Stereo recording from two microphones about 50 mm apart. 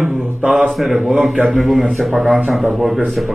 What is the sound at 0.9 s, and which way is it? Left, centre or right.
A man's voice, centre.